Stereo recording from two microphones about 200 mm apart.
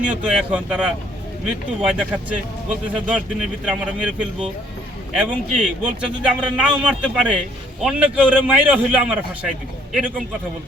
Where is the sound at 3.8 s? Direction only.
5° right (ahead or behind).